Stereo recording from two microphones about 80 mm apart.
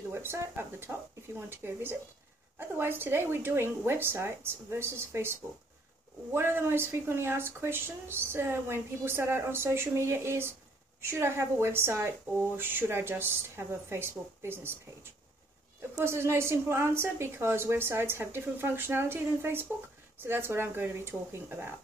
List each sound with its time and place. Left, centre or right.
0.1 s a woman's voice: right
16.0 s a woman's voice: right